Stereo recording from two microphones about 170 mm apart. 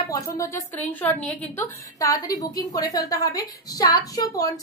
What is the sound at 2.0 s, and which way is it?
A woman's voice, 20° left (ahead or behind).